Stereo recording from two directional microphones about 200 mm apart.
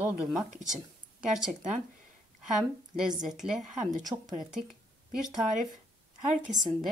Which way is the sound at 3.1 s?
40° right (ahead or behind).